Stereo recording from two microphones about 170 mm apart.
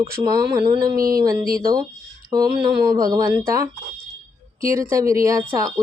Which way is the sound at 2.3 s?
20° right (ahead or behind).